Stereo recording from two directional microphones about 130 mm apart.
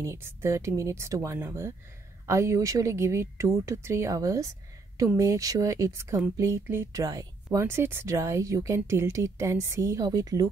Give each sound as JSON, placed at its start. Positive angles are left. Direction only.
{"t": 0.0, "sound": "a woman's voice", "side_deg": -20}